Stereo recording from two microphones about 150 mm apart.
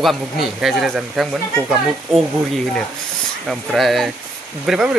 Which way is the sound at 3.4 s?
Centre (ahead or behind).